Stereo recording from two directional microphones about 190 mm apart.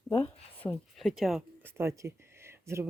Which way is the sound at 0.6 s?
5° left (ahead or behind).